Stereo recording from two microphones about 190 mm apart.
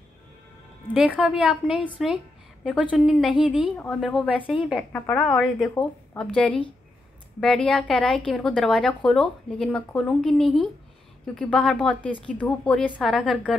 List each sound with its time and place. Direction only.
0.9 s speech: 5° right (ahead or behind)